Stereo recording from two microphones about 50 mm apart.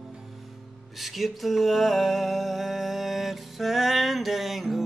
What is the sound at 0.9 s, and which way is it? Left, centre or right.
Music, centre.